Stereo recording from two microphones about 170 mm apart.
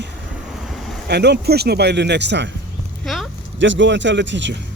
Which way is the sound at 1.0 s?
80° right.